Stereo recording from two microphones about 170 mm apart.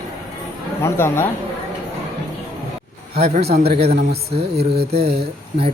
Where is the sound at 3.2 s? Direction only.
40° right (ahead or behind).